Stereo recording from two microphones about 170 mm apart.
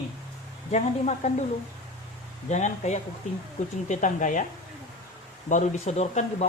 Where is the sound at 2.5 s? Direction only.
45° left (ahead or behind).